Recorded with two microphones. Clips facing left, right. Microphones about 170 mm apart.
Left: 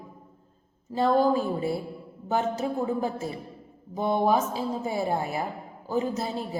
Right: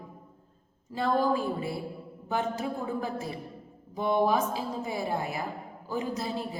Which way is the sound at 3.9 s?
35° left (ahead or behind).